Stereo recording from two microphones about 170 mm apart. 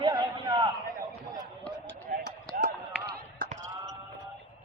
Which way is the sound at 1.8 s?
85° right.